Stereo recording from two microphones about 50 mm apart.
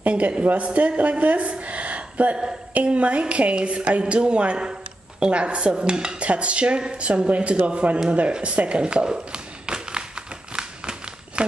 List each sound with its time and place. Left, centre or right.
0.0 s a woman's voice: right
2.7 s dishes: right
8.3 s speech: right
10.5 s a sound: centre